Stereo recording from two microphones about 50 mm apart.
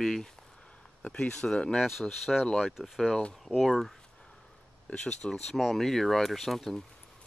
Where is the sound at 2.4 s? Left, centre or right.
Centre.